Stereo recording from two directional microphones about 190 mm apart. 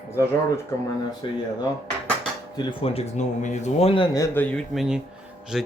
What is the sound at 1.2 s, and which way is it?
Speech, 25° left (ahead or behind).